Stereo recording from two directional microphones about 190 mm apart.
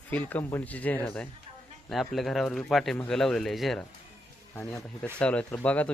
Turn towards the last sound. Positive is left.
turn(degrees=5)  # may be behind; listen again after turning